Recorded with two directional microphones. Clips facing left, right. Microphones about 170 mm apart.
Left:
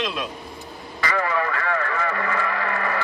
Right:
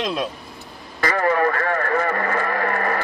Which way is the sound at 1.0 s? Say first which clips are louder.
Right 5 dB; 45° right (ahead or behind).